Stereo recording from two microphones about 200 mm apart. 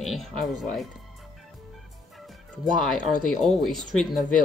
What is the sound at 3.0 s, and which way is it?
Speech, 40° left (ahead or behind).